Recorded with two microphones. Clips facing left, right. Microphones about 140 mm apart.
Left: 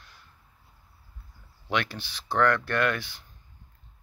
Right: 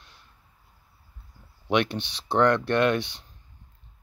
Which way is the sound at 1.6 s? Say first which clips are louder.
Right 6 dB; 20° right (ahead or behind).